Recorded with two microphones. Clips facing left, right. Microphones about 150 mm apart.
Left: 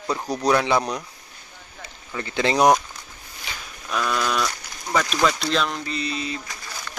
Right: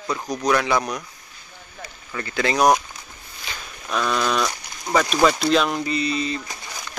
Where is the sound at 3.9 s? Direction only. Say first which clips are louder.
Right 2 dB; centre (ahead or behind).